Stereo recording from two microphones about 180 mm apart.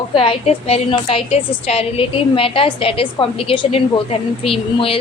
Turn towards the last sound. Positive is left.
turn(degrees=30)  # may be behind; listen again after turning